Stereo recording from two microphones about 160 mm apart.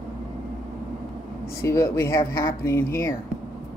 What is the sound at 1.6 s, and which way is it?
Speech, 15° left (ahead or behind).